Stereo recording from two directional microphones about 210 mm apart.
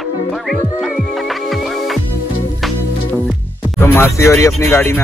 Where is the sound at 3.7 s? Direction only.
10° left (ahead or behind).